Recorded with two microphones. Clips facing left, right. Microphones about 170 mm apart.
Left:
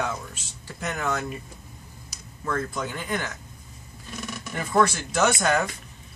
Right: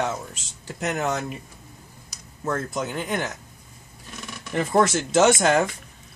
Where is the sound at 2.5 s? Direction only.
20° right (ahead or behind).